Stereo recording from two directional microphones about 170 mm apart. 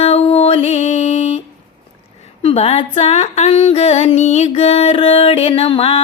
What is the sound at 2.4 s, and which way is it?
Female singing, 35° left (ahead or behind).